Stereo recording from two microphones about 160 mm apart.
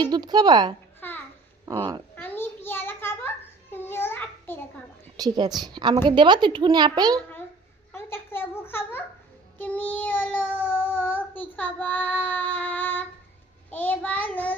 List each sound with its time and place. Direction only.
0.0 s a child's voice: 25° right (ahead or behind)
1.0 s babbling: 10° left (ahead or behind)
1.6 s speech: 20° right (ahead or behind)
2.2 s a sound: 15° left (ahead or behind)
5.1 s a woman's voice: 25° right (ahead or behind)
7.9 s a sound: 15° left (ahead or behind)
9.6 s child singing: 10° left (ahead or behind)